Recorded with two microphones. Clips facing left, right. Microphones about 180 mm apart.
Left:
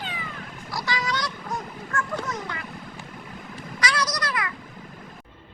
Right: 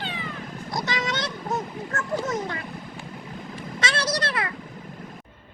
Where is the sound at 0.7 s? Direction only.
20° right (ahead or behind).